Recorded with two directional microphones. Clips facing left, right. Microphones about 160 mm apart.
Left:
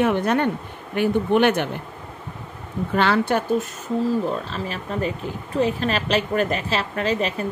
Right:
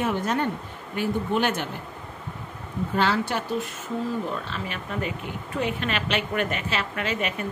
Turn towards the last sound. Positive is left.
turn(degrees=35)  # may be behind; listen again after turning